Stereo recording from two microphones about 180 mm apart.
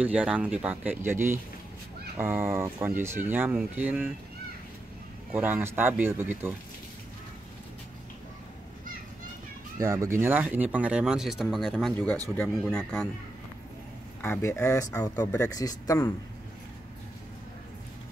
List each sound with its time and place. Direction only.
0.0 s speech: 5° right (ahead or behind)
5.3 s speech: 10° right (ahead or behind)
9.8 s speech: 15° right (ahead or behind); by 13.1 s 5° left (ahead or behind)
14.2 s speech: 15° left (ahead or behind)